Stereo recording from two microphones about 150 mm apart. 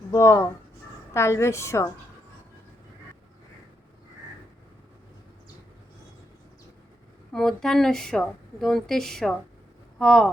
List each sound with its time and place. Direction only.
0.1 s a woman's voice: 20° left (ahead or behind)
7.3 s speech: 5° left (ahead or behind)